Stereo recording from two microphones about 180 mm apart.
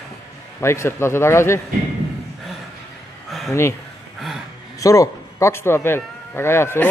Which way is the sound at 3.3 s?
Centre (ahead or behind).